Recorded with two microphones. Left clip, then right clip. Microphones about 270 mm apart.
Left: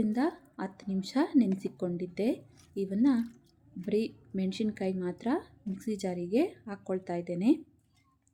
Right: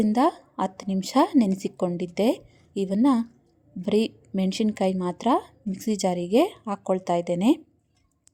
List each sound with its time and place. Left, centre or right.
0.0 s speech: right